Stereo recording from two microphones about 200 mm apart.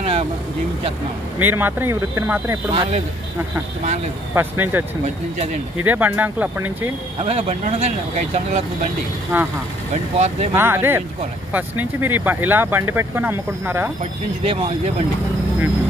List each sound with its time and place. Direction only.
0.0 s vehicle: 30° right (ahead or behind)
1.4 s speech: 10° right (ahead or behind)
2.7 s speech: 30° right (ahead or behind)
4.4 s speech: 10° right (ahead or behind)
5.0 s speech: 35° right (ahead or behind)
5.9 s speech: 10° right (ahead or behind)
7.2 s speech: 30° right (ahead or behind)
9.3 s speech: 10° right (ahead or behind)
10.1 s speech: 35° right (ahead or behind)
10.5 s speech: 10° right (ahead or behind)
14.4 s speech: 25° right (ahead or behind)